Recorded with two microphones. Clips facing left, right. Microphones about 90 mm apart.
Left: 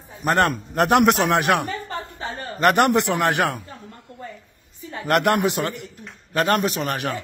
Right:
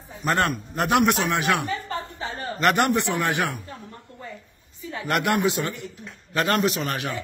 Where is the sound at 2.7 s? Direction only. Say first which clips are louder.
Left 4 dB; 70° left (ahead or behind).